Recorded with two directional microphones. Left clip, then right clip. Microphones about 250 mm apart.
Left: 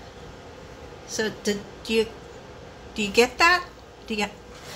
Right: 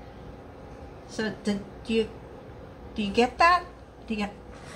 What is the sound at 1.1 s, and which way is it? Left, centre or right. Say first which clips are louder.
A woman's voice: left 4 dB; centre.